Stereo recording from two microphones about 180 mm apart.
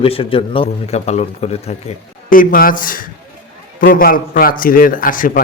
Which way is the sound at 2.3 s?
50° left (ahead or behind).